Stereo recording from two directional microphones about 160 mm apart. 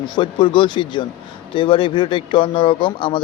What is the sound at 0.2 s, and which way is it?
Speech, 30° left (ahead or behind).